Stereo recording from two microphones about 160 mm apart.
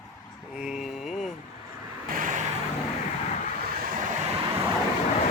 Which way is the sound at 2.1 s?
55° right (ahead or behind).